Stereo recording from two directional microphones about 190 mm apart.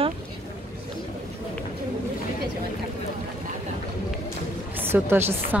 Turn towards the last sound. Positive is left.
turn(degrees=-10)  # may be behind; listen again after turning